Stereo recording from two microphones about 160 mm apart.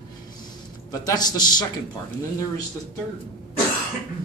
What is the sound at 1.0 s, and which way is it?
Speech, 25° left (ahead or behind).